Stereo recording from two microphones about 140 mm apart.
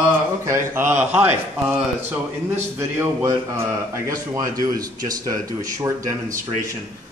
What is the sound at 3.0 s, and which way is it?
A man's voice, 15° right (ahead or behind).